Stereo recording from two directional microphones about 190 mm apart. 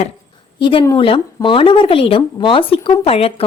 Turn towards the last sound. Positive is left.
turn(degrees=30)  # may be behind; listen again after turning